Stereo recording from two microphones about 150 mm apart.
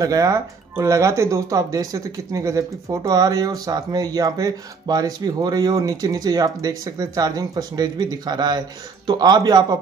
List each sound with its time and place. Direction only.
0.0 s speech: 20° right (ahead or behind)